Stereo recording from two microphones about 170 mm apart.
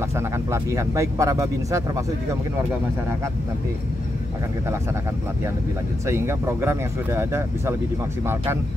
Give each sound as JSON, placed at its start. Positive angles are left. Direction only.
{"t": 0.1, "sound": "speech", "side_deg": -15}
{"t": 6.0, "sound": "speech", "side_deg": -15}